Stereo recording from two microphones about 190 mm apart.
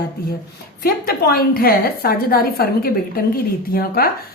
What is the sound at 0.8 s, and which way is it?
A woman's voice, 50° left (ahead or behind).